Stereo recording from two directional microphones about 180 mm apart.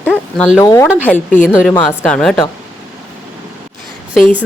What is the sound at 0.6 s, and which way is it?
Speech, 15° left (ahead or behind).